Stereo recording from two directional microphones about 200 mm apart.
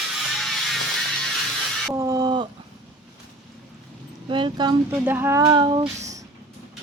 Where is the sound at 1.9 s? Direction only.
15° right (ahead or behind).